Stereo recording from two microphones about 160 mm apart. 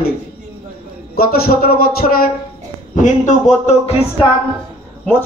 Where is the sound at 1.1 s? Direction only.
70° left (ahead or behind).